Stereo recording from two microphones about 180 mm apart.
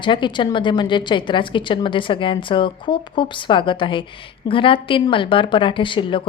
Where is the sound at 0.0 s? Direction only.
25° left (ahead or behind).